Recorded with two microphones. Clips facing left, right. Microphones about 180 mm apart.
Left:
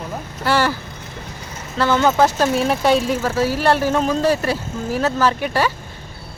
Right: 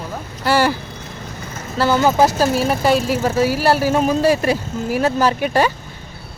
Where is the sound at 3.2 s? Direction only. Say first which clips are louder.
Right 2 dB; 15° right (ahead or behind).